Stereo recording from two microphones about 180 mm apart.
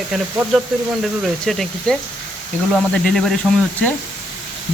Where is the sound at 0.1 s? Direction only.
Centre (ahead or behind).